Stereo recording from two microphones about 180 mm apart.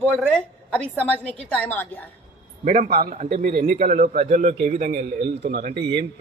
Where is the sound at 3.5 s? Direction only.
55° right (ahead or behind).